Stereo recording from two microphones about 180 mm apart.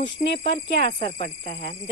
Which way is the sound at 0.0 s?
30° left (ahead or behind).